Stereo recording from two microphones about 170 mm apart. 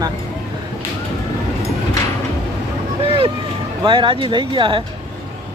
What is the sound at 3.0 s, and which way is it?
Speech, 35° right (ahead or behind).